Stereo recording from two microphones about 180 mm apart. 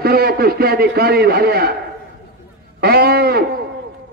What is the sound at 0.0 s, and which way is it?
A man's voice, 60° right (ahead or behind).